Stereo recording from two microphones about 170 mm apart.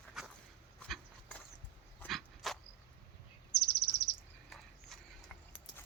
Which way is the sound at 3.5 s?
75° left (ahead or behind).